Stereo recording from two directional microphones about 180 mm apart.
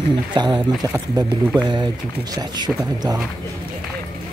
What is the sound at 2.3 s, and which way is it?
Speech, 20° right (ahead or behind).